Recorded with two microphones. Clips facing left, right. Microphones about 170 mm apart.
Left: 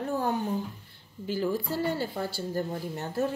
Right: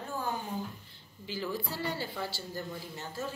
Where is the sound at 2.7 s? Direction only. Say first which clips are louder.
Left 9 dB; 60° left (ahead or behind).